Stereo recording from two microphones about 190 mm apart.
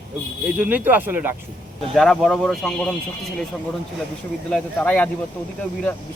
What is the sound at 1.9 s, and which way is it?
Speech, centre (ahead or behind).